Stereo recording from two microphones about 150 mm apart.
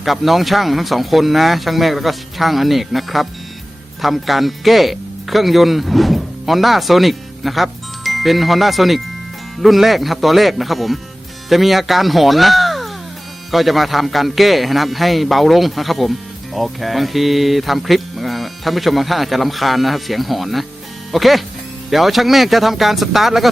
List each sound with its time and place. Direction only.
0.0 s speech: centre (ahead or behind)